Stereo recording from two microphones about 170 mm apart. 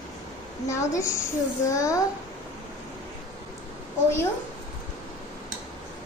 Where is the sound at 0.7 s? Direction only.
15° left (ahead or behind).